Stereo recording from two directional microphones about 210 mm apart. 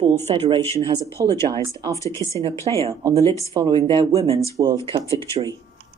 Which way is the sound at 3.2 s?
15° left (ahead or behind).